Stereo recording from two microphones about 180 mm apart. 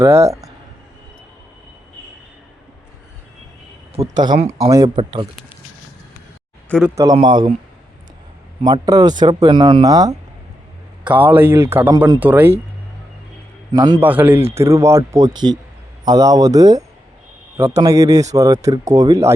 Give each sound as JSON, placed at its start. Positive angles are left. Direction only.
{"t": 0.0, "sound": "a man's voice", "side_deg": -15}
{"t": 4.2, "sound": "speech", "side_deg": -25}
{"t": 6.8, "sound": "a man's voice", "side_deg": -20}
{"t": 8.6, "sound": "speech", "side_deg": -20}
{"t": 11.0, "sound": "a man's voice", "side_deg": -10}
{"t": 12.2, "sound": "a man's voice", "side_deg": -10}
{"t": 13.7, "sound": "speech", "side_deg": -25}
{"t": 14.0, "sound": "a man's voice", "side_deg": -10}